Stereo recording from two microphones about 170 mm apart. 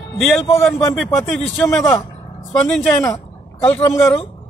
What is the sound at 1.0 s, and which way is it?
Speech, centre (ahead or behind).